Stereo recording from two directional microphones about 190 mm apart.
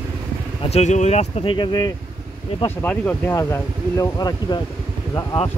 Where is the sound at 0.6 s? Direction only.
35° left (ahead or behind).